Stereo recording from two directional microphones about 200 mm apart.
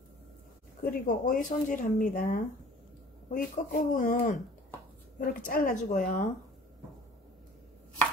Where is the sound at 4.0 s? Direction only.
40° left (ahead or behind).